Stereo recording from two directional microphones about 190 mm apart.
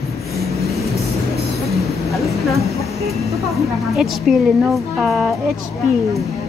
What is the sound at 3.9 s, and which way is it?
A woman's voice, centre (ahead or behind).